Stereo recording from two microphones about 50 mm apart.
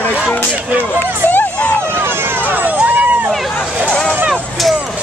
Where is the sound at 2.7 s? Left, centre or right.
Right.